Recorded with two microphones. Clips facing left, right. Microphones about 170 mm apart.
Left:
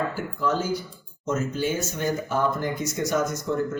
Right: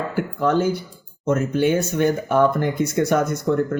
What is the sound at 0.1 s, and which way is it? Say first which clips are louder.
Speech: right 6 dB; 60° right (ahead or behind).